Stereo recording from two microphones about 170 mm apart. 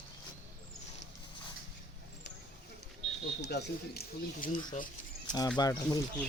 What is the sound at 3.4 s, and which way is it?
Speech, 80° left.